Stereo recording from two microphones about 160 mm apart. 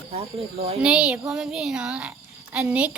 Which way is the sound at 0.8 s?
5° right (ahead or behind).